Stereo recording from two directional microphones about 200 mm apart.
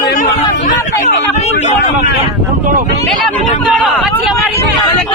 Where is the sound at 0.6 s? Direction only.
35° left (ahead or behind).